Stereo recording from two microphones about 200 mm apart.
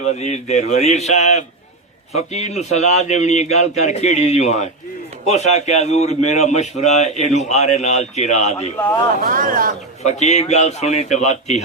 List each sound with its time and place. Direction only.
0.0 s speech: 35° left (ahead or behind)
9.2 s speech: 45° right (ahead or behind)
10.0 s speech: 35° left (ahead or behind)